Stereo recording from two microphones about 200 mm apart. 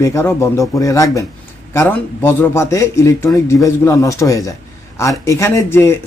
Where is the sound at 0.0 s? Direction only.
15° left (ahead or behind).